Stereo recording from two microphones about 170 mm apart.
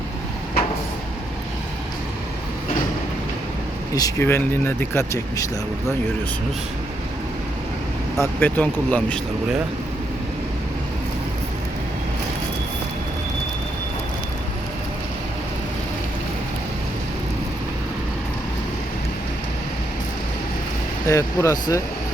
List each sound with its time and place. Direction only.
3.9 s speech: 15° left (ahead or behind)
8.2 s speech: 10° left (ahead or behind)
21.1 s speech: 15° left (ahead or behind)